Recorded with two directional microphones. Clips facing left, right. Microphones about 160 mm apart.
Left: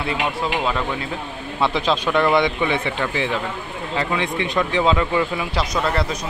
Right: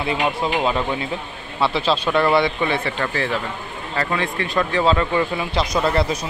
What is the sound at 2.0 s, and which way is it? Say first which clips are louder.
Speech: even; 10° right (ahead or behind).